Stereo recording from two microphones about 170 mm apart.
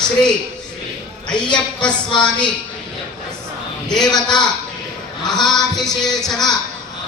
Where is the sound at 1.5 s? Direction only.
5° left (ahead or behind).